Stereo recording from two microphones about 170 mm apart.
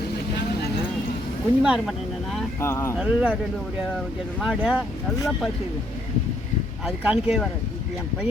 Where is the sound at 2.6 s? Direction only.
15° left (ahead or behind).